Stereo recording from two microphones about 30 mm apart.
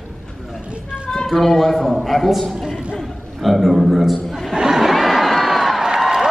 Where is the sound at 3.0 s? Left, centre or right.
Centre.